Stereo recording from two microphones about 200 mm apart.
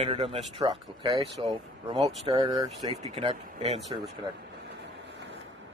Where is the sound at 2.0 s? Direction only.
30° right (ahead or behind).